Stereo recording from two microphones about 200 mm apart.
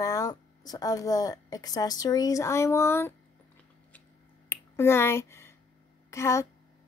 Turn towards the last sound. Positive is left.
turn(degrees=15)  # may be behind; listen again after turning